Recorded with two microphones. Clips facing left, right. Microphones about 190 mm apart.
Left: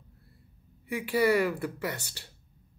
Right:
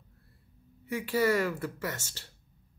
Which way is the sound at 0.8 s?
15° left (ahead or behind).